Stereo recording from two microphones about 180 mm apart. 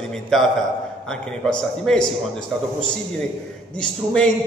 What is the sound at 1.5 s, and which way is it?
Speech, 5° left (ahead or behind).